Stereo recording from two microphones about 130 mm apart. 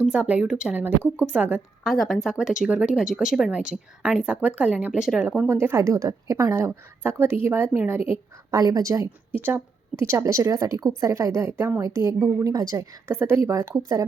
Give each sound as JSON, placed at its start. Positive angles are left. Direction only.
{"t": 0.0, "sound": "speech", "side_deg": -10}
{"t": 1.8, "sound": "speech", "side_deg": 0}
{"t": 5.5, "sound": "a woman's voice", "side_deg": -20}